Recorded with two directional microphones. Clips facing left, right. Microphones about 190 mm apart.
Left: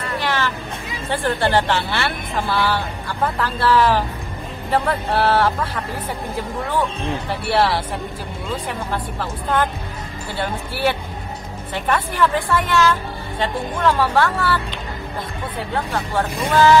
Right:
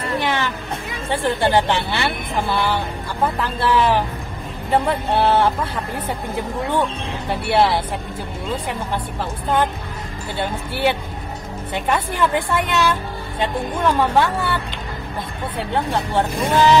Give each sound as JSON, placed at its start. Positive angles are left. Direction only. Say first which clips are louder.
{"t": 0.0, "sound": "a sound", "louder": "right 1 dB", "side_deg": -20}
{"t": 1.1, "sound": "a woman's voice", "louder": "right 1 dB", "side_deg": -20}
{"t": 7.4, "sound": "a woman's voice", "louder": "right 1 dB", "side_deg": -20}
{"t": 9.2, "sound": "a woman's voice", "louder": "right 1 dB", "side_deg": -15}
{"t": 15.7, "sound": "a woman's voice", "louder": "right 3 dB", "side_deg": -20}